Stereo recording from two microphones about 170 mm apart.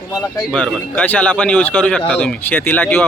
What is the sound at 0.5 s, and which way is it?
Speech, 5° left (ahead or behind).